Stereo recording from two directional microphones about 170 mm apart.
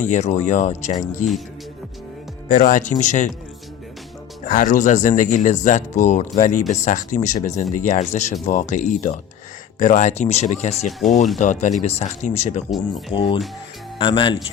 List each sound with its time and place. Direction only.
0.1 s speech: 40° left (ahead or behind)
2.5 s speech: 55° left (ahead or behind)
4.4 s speech: 50° left (ahead or behind)
10.8 s speech: centre (ahead or behind)
11.3 s speech: 45° left (ahead or behind); by 14.3 s 30° left (ahead or behind)